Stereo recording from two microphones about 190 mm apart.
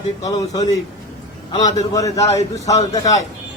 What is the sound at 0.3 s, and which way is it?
Speech, 20° left (ahead or behind).